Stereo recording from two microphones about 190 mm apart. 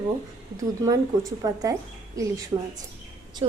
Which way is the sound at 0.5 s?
20° right (ahead or behind).